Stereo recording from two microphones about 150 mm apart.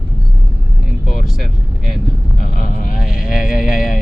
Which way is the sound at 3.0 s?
5° right (ahead or behind).